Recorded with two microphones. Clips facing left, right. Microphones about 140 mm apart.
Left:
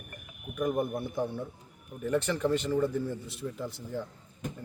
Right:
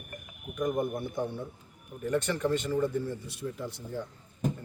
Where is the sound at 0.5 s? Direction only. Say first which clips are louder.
Even; 5° left (ahead or behind).